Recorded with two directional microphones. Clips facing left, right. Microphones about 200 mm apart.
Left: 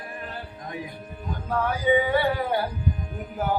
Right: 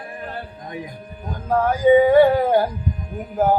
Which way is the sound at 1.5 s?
45° right (ahead or behind).